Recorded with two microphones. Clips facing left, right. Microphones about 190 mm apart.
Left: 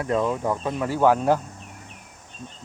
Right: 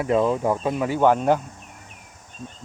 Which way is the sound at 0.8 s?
5° left (ahead or behind).